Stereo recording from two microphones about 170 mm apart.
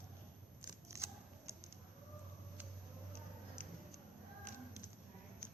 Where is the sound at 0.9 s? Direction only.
15° right (ahead or behind).